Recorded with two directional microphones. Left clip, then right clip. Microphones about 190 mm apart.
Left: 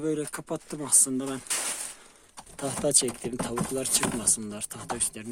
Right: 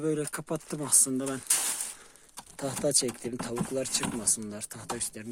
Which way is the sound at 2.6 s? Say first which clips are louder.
Left 2 dB; 10° right (ahead or behind).